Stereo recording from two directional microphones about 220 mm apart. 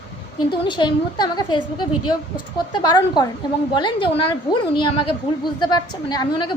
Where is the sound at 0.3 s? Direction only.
20° left (ahead or behind).